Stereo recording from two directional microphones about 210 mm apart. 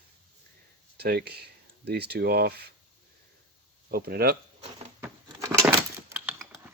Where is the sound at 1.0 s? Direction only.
50° right (ahead or behind).